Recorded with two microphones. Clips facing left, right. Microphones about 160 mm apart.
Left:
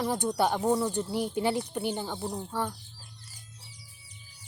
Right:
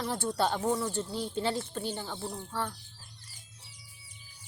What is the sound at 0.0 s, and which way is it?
Speech, 15° left (ahead or behind).